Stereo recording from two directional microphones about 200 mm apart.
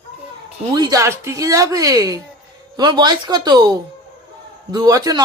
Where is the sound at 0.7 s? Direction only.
20° right (ahead or behind).